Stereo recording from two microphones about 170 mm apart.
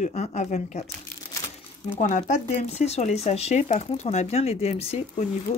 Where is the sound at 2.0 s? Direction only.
45° left (ahead or behind).